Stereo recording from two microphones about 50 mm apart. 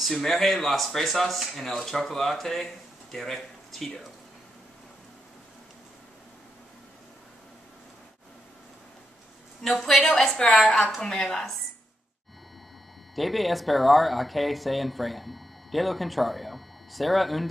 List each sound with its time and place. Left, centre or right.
0.0 s speech: centre
9.6 s speech: centre
10.3 s a woman's voice: centre
13.1 s speech: centre